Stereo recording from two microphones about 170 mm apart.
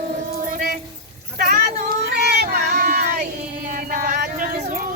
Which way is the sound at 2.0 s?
65° right (ahead or behind).